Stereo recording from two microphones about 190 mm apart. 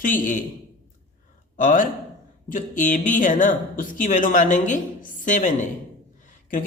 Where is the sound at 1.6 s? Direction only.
45° left (ahead or behind).